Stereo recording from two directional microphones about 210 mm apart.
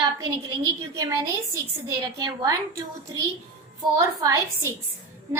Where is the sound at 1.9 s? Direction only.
15° right (ahead or behind).